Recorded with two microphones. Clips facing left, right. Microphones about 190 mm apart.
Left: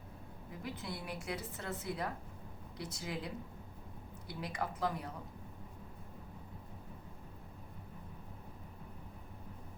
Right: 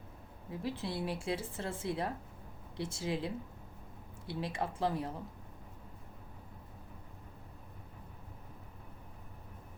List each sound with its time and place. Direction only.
0.6 s a woman's voice: 30° right (ahead or behind)